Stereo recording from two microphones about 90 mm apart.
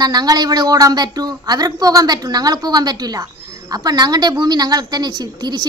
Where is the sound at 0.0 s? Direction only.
50° right (ahead or behind).